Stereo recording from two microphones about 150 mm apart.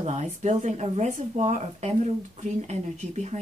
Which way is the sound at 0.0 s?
50° right (ahead or behind).